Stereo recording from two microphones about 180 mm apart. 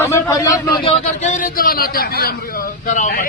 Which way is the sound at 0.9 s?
40° left (ahead or behind).